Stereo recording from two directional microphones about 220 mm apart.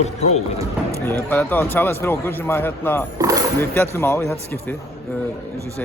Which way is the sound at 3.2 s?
15° right (ahead or behind).